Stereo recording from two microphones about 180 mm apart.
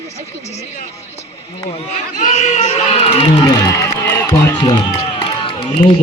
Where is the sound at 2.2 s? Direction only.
40° left (ahead or behind).